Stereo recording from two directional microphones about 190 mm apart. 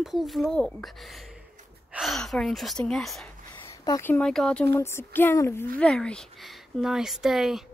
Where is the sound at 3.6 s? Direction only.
15° left (ahead or behind).